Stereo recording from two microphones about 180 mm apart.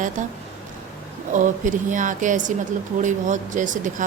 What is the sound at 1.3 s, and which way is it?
A woman's voice, 45° right (ahead or behind).